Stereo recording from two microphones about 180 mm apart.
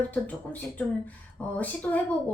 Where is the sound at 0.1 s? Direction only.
10° left (ahead or behind).